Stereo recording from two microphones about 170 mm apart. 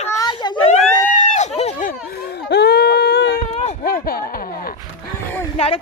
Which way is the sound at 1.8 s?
65° left (ahead or behind).